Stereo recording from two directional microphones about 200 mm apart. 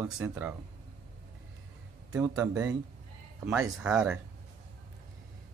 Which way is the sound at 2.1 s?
10° right (ahead or behind).